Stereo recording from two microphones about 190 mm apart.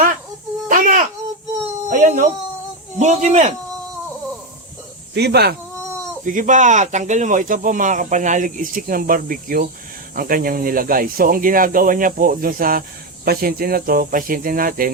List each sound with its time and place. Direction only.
0.7 s babbling: 45° right (ahead or behind)
1.9 s a sound: 40° right (ahead or behind)
3.0 s speech: 35° right (ahead or behind)
5.1 s speech: 60° right (ahead or behind)
6.2 s speech: 40° right (ahead or behind)